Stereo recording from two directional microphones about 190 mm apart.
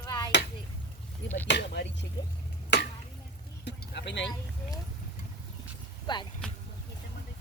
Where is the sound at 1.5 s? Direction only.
65° left (ahead or behind).